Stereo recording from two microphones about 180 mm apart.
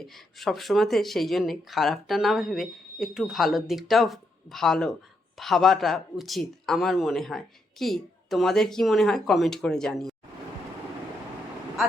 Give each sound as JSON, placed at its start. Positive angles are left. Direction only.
{"t": 0.0, "sound": "speech", "side_deg": 0}